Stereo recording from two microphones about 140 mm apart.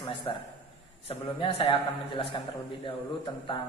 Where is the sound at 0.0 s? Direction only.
35° left (ahead or behind).